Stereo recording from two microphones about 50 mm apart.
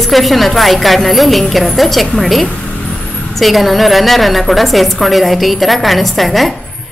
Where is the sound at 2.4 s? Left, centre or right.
Left.